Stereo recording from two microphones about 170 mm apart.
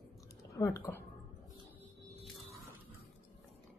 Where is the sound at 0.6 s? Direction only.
15° left (ahead or behind).